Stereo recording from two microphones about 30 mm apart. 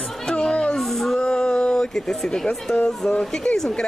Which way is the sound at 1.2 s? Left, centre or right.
Left.